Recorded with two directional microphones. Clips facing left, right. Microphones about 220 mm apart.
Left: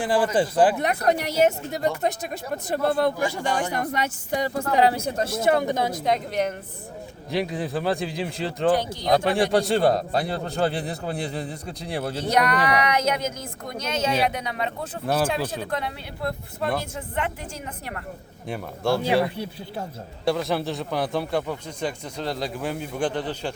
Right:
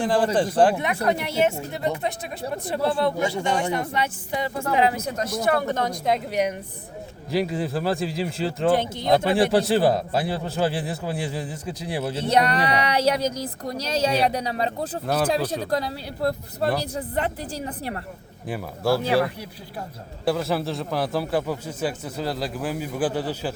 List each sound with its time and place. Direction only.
0.0 s speech: 5° left (ahead or behind)
1.0 s a woman's voice: 40° left (ahead or behind)
3.2 s a man's voice: 25° right (ahead or behind)
3.8 s a man's voice: 45° left (ahead or behind); by 8.7 s centre (ahead or behind)
8.7 s a man's voice: 25° right (ahead or behind)
9.2 s a man's voice: centre (ahead or behind)
12.2 s speech: 30° right (ahead or behind)
15.0 s a man's voice: centre (ahead or behind)
15.7 s speech: 35° right (ahead or behind)
18.4 s a man's voice: 5° right (ahead or behind)
19.2 s speech: 25° left (ahead or behind)
20.2 s a man's voice: centre (ahead or behind)